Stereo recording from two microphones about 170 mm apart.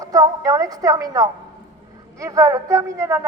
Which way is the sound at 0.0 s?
20° right (ahead or behind).